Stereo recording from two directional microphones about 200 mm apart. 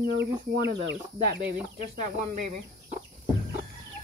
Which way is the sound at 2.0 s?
35° right (ahead or behind).